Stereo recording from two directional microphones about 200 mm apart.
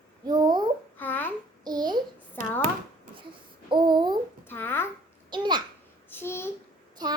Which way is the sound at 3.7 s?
25° right (ahead or behind).